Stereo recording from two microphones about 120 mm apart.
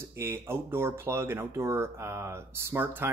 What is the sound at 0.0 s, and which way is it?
Speech, 20° right (ahead or behind).